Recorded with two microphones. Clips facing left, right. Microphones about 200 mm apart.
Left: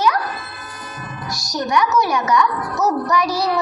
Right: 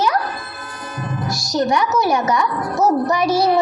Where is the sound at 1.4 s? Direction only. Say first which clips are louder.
Right 1 dB; 25° right (ahead or behind).